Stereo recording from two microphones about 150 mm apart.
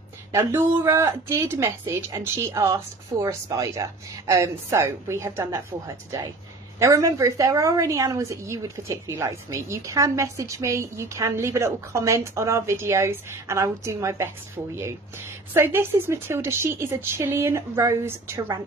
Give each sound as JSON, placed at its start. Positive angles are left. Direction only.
{"t": 0.3, "sound": "a woman's voice", "side_deg": -15}
{"t": 15.5, "sound": "speech", "side_deg": -15}